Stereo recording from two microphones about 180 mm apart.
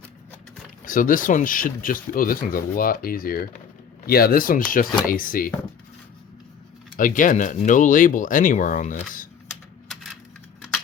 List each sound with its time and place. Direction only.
0.9 s speech: 50° left (ahead or behind)
6.9 s speech: 45° left (ahead or behind)
9.9 s coin: centre (ahead or behind)